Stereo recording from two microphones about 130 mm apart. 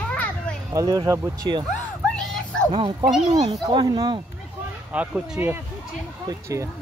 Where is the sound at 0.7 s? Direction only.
30° right (ahead or behind).